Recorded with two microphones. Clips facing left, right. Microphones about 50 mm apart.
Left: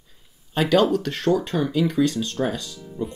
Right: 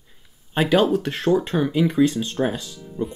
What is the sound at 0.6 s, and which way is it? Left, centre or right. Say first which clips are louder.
Speech: even; centre.